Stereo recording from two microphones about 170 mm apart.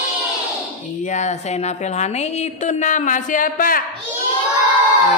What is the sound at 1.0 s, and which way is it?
A woman's voice, 45° left (ahead or behind).